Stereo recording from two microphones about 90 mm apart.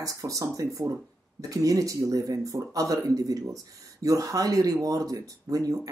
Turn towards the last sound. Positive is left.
turn(degrees=-40)  # may be behind; listen again after turning